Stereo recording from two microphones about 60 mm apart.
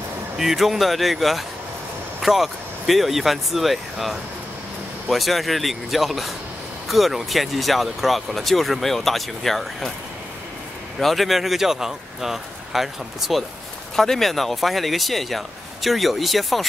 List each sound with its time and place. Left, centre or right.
0.4 s speech: centre
11.0 s speech: centre
13.9 s speech: centre